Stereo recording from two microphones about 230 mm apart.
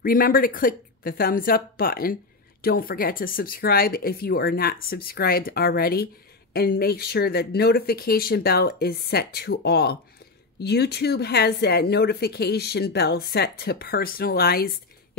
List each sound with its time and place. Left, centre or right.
0.0 s a woman's voice: left